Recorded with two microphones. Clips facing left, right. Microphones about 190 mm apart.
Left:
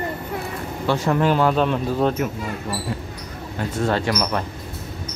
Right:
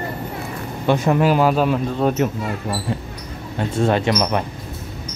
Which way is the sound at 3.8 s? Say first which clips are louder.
Right 4 dB; 20° right (ahead or behind).